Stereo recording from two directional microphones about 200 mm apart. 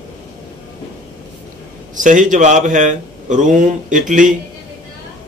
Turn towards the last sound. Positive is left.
turn(degrees=-40)  # may be behind; listen again after turning